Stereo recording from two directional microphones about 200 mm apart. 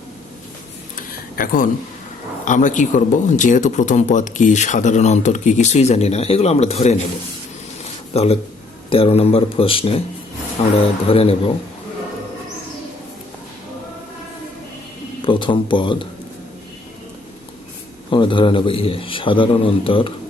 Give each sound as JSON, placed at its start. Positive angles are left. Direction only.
{"t": 0.9, "sound": "a sound", "side_deg": 40}
{"t": 2.4, "sound": "speech", "side_deg": 40}
{"t": 8.1, "sound": "a man's voice", "side_deg": 30}
{"t": 15.2, "sound": "a man's voice", "side_deg": 25}
{"t": 18.1, "sound": "a man's voice", "side_deg": 25}